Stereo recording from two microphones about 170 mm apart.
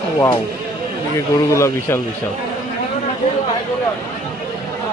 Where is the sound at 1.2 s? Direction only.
15° left (ahead or behind).